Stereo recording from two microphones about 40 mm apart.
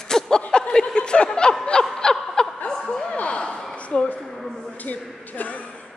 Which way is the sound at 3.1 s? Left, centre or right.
Left.